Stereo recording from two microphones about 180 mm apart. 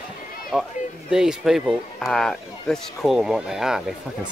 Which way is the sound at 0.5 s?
5° right (ahead or behind).